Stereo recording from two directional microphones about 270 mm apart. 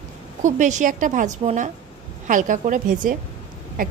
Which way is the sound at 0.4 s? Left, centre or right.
Right.